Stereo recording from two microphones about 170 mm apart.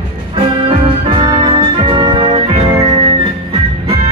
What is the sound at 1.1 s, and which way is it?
Music, 30° right (ahead or behind).